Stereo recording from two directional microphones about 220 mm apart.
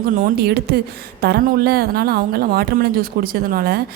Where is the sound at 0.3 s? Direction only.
45° right (ahead or behind).